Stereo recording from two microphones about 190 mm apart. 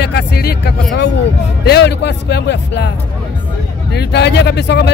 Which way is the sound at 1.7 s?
60° left (ahead or behind).